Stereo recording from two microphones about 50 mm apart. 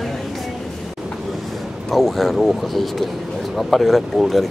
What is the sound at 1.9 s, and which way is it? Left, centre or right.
Speech, centre.